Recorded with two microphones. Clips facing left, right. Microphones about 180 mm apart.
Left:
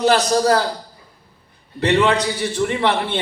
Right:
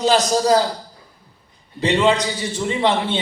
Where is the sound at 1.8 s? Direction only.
60° left (ahead or behind).